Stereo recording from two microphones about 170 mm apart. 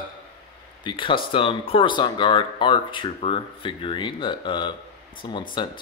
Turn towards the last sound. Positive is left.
turn(degrees=30)  # may be behind; listen again after turning